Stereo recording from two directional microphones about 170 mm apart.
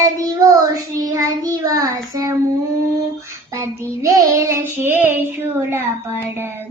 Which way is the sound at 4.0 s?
20° right (ahead or behind).